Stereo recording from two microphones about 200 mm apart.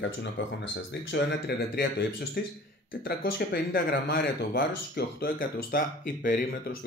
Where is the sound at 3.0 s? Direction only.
50° left (ahead or behind).